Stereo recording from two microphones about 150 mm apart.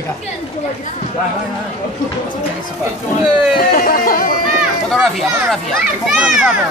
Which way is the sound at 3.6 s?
75° left (ahead or behind).